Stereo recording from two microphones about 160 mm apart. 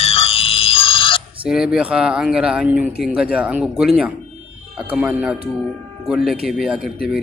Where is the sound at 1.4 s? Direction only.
5° right (ahead or behind).